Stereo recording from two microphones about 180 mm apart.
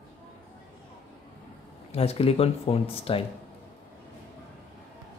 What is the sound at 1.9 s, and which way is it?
Speech, 35° left (ahead or behind).